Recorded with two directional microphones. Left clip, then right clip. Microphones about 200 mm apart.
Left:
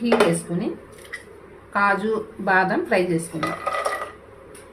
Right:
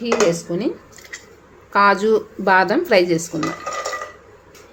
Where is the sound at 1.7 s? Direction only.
50° right (ahead or behind).